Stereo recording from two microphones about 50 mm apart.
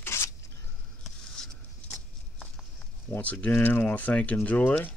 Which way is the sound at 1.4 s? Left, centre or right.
Centre.